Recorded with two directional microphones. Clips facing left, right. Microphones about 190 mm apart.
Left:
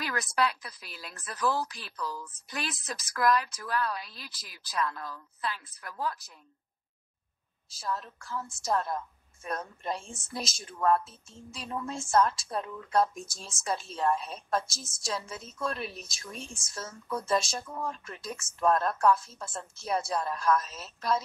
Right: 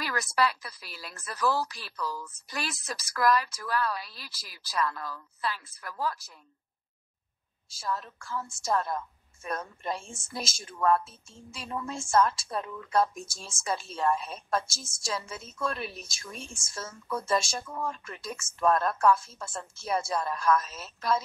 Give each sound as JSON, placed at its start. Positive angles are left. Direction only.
{"t": 0.0, "sound": "speech", "side_deg": 0}
{"t": 7.7, "sound": "speech", "side_deg": 0}